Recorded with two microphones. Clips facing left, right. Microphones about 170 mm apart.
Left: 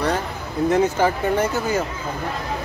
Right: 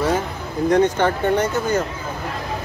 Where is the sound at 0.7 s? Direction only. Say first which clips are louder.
Right 2 dB; 5° left (ahead or behind).